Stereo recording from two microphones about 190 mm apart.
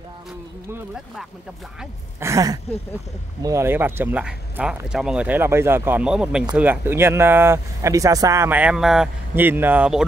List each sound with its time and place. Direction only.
0.7 s speech: 10° right (ahead or behind)
2.1 s speech: 15° right (ahead or behind)